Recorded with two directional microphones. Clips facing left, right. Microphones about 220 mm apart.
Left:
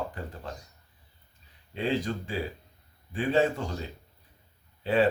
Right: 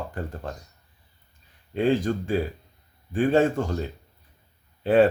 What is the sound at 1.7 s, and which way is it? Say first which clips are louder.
Speech: right 7 dB; 50° right (ahead or behind).